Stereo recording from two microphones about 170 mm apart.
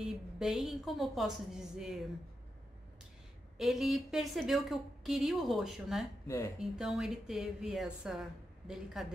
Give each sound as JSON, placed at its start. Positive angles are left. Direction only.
{"t": 0.0, "sound": "a woman's voice", "side_deg": 0}
{"t": 3.5, "sound": "a woman's voice", "side_deg": 0}
{"t": 6.2, "sound": "speech", "side_deg": 15}
{"t": 6.6, "sound": "a woman's voice", "side_deg": -5}